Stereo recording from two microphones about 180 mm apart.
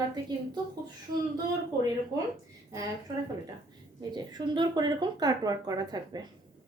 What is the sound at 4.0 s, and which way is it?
Speech, 25° right (ahead or behind).